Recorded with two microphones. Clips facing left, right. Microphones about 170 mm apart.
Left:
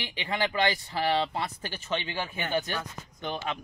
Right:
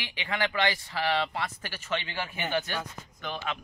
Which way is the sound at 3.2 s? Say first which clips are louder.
Left 2 dB; 25° left (ahead or behind).